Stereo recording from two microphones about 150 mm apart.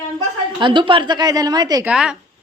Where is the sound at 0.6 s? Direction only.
30° right (ahead or behind).